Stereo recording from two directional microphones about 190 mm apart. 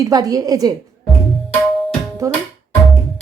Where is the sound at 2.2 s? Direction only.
15° right (ahead or behind).